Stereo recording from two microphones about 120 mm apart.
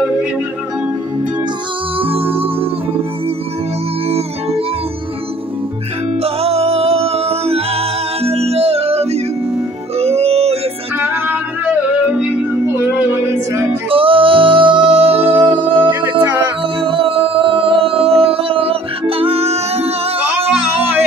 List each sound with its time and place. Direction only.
2.0 s music: 50° right (ahead or behind)
4.1 s music: 55° right (ahead or behind)
6.2 s music: 55° right (ahead or behind)
11.0 s yodeling: 15° right (ahead or behind)
12.7 s music: 20° right (ahead or behind)
13.8 s music: 50° right (ahead or behind)
15.9 s music: 15° right (ahead or behind)
16.8 s music: 50° right (ahead or behind)
20.2 s a sound: 10° right (ahead or behind)